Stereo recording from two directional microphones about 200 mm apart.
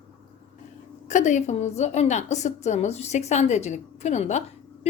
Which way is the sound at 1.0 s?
35° left (ahead or behind).